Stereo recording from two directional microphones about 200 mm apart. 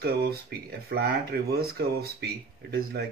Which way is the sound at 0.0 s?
50° right (ahead or behind).